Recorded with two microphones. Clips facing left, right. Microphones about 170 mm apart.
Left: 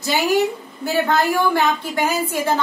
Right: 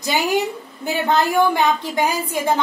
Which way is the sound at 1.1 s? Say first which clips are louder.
Right 4 dB; 20° right (ahead or behind).